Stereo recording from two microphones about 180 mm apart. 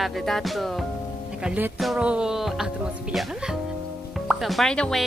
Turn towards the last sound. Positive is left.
turn(degrees=5)  # may be behind; listen again after turning